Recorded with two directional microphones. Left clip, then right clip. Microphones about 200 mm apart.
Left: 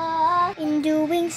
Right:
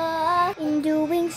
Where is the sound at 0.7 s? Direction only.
Centre (ahead or behind).